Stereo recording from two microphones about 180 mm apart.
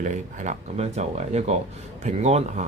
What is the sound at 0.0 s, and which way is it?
Speech, 40° right (ahead or behind).